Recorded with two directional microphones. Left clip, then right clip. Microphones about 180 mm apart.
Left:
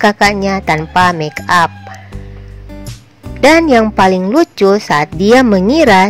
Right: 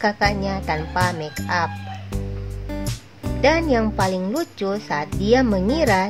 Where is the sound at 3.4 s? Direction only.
45° left (ahead or behind).